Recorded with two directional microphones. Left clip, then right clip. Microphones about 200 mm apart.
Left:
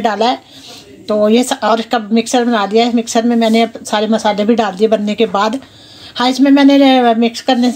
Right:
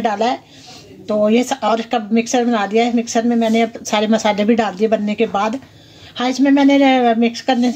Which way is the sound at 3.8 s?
10° right (ahead or behind).